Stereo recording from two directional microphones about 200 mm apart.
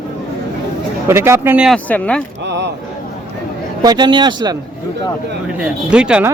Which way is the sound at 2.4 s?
60° right (ahead or behind).